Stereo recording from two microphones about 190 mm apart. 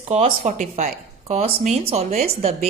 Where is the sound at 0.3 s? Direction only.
45° right (ahead or behind).